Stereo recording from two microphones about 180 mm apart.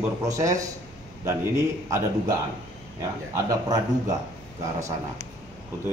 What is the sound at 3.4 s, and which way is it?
Speech, 20° right (ahead or behind).